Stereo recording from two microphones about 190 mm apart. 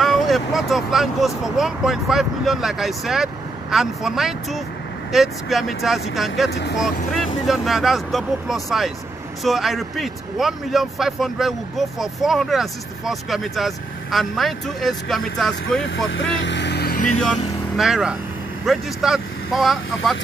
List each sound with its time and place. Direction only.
0.0 s speech: centre (ahead or behind)
6.5 s speech: 60° left (ahead or behind)
6.8 s speech: centre (ahead or behind)
16.1 s speech: 70° left (ahead or behind); by 17.1 s 50° left (ahead or behind)
17.2 s speech: centre (ahead or behind)